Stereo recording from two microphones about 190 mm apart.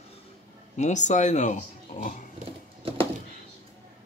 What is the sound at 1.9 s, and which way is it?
Pig, 40° left (ahead or behind).